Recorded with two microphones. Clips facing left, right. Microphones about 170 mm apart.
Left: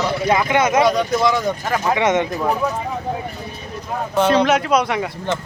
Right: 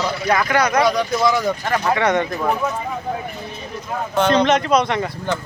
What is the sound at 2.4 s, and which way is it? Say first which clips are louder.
Speech: left 1 dB; 5° left (ahead or behind).